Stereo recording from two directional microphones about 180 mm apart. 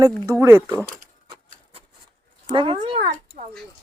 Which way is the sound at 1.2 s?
30° right (ahead or behind).